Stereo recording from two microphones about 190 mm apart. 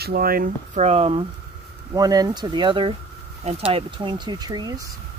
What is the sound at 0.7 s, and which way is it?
Speech, 35° right (ahead or behind).